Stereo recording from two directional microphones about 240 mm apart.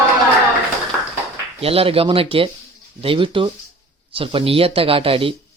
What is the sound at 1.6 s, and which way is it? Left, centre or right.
Speech, right.